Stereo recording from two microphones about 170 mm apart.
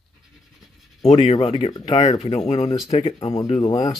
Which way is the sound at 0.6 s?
Centre (ahead or behind).